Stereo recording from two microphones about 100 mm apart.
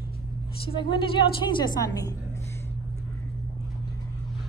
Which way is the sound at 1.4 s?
50° left (ahead or behind).